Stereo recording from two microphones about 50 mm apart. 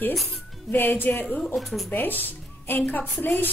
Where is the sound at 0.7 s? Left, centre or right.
Left.